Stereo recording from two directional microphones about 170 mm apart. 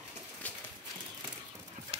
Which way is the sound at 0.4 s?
10° left (ahead or behind).